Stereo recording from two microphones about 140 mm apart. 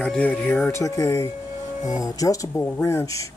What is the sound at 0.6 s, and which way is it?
Speech, 20° left (ahead or behind).